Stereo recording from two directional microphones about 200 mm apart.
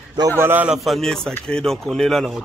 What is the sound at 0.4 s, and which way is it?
Speech, 10° right (ahead or behind).